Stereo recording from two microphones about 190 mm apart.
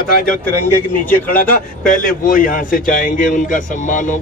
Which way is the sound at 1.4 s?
45° left (ahead or behind).